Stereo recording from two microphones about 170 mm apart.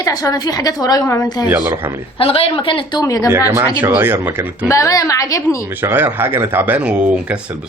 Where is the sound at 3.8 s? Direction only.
10° right (ahead or behind).